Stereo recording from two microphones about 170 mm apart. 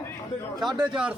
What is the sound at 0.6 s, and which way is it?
Speech, 5° right (ahead or behind).